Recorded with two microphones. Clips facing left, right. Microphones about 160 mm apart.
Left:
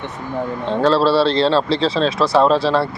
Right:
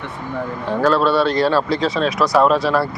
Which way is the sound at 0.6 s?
25° left (ahead or behind).